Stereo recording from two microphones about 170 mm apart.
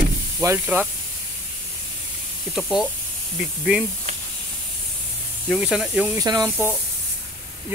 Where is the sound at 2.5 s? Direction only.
Centre (ahead or behind).